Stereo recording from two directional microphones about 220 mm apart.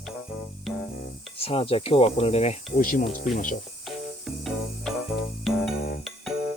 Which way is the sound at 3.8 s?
Centre (ahead or behind).